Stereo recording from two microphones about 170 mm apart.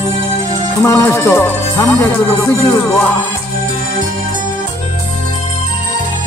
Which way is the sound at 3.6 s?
50° right (ahead or behind).